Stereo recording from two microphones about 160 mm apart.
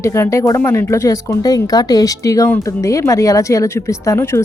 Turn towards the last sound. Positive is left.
turn(degrees=15)  # may be behind; listen again after turning